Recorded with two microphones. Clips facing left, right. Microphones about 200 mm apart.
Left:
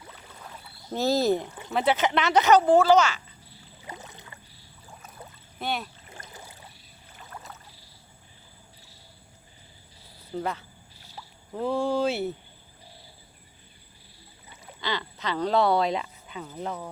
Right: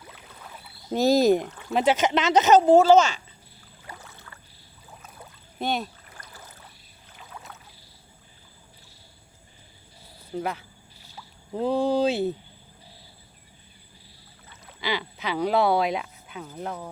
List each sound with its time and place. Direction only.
0.9 s speech: 15° right (ahead or behind)
3.8 s a sound: 20° left (ahead or behind)
4.9 s rowboat: centre (ahead or behind)
6.1 s boat: 25° left (ahead or behind)
7.2 s rowboat: centre (ahead or behind)
10.3 s speech: 10° right (ahead or behind)
11.5 s speech: 20° right (ahead or behind)
14.8 s speech: 10° right (ahead or behind)